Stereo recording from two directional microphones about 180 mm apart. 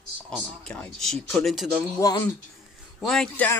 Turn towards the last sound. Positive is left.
turn(degrees=5)  # may be behind; listen again after turning